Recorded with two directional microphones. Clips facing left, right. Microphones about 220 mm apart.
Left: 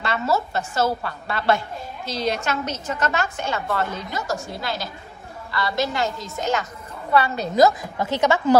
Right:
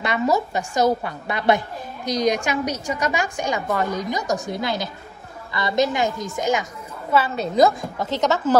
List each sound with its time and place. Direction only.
0.0 s a woman's voice: 15° right (ahead or behind)
7.1 s a woman's voice: centre (ahead or behind)